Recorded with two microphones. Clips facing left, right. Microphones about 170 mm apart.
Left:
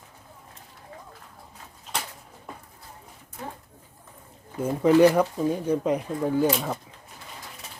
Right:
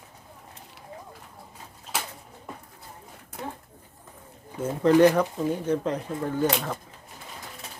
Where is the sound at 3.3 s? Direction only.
70° right (ahead or behind).